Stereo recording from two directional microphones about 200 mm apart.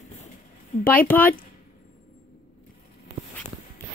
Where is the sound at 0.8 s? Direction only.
10° left (ahead or behind).